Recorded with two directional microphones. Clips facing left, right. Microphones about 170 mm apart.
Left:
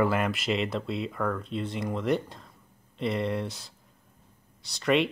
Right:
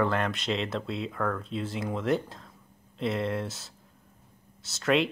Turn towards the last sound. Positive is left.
turn(degrees=0)  # may be behind; listen again after turning